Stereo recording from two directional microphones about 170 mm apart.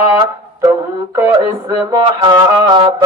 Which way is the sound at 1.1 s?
20° right (ahead or behind).